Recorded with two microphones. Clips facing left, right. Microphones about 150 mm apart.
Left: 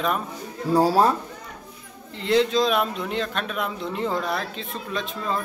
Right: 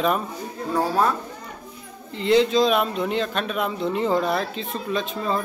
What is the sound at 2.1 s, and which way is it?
Speech, centre (ahead or behind).